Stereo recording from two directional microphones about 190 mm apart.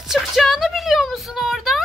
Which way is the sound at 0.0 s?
Centre (ahead or behind).